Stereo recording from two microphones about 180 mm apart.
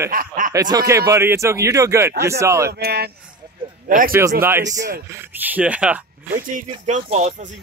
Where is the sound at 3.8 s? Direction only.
50° right (ahead or behind).